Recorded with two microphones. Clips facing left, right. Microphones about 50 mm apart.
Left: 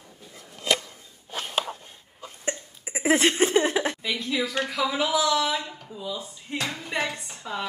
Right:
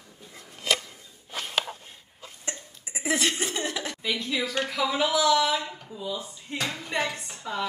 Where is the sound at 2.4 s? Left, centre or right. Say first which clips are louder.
Left 7 dB; left.